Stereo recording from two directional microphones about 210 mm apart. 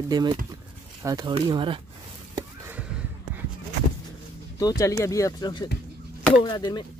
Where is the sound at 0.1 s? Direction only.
20° right (ahead or behind).